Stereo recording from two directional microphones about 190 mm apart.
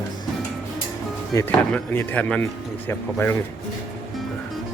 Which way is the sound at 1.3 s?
15° left (ahead or behind).